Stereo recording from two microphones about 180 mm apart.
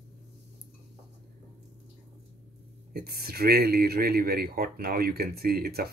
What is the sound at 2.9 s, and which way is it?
Speech, 60° right (ahead or behind).